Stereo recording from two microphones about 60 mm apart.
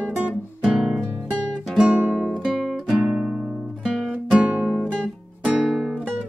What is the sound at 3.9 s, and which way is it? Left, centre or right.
Music, centre.